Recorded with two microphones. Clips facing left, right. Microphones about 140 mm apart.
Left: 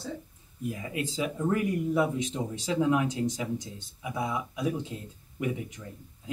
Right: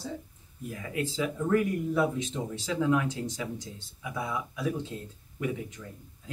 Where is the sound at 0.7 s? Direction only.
15° left (ahead or behind).